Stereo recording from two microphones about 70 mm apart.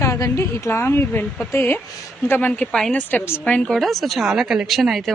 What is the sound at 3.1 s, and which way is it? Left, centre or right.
Speech, left.